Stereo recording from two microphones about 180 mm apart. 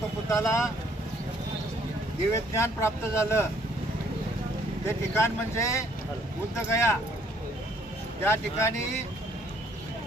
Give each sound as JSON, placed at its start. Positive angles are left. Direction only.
{"t": 0.3, "sound": "speech", "side_deg": 15}
{"t": 2.3, "sound": "speech", "side_deg": 15}
{"t": 4.9, "sound": "speech", "side_deg": 15}
{"t": 8.2, "sound": "speech", "side_deg": 15}